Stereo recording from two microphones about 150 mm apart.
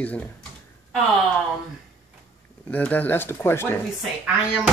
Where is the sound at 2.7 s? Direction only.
10° left (ahead or behind).